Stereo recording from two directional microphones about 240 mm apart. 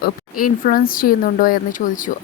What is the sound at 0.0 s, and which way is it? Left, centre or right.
A woman's voice, left.